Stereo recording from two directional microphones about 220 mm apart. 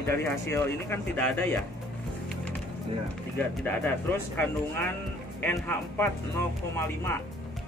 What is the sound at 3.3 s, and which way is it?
Speech, 10° left (ahead or behind).